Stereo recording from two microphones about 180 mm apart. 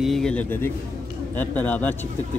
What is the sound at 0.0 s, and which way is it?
Speech, centre (ahead or behind).